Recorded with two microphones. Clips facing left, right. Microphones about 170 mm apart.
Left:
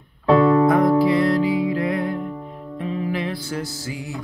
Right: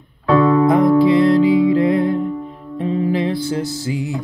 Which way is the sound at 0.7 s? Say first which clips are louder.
Right 4 dB; 20° right (ahead or behind).